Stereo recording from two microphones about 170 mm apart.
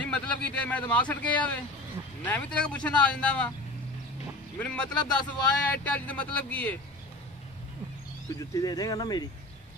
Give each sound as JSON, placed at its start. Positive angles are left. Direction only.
{"t": 0.0, "sound": "speech", "side_deg": 5}
{"t": 4.6, "sound": "speech", "side_deg": 5}
{"t": 8.4, "sound": "speech", "side_deg": 20}